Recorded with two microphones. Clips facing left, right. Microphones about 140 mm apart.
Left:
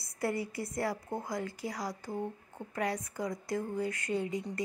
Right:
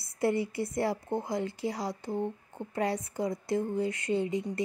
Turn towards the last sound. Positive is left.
turn(degrees=-25)  # may be behind; listen again after turning